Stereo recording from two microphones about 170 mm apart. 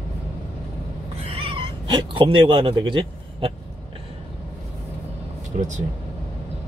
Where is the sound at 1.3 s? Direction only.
35° right (ahead or behind).